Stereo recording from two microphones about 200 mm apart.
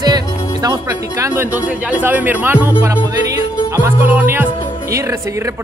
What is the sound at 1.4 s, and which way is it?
Speech, 5° right (ahead or behind).